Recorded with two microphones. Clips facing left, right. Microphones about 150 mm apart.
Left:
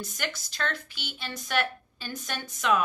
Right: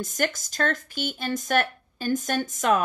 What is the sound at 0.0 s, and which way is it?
Speech, 45° right (ahead or behind).